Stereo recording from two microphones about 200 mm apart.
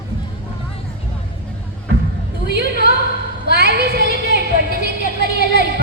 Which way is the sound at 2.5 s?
55° right (ahead or behind).